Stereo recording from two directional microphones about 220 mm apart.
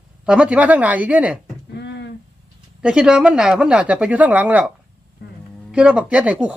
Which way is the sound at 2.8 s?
5° right (ahead or behind).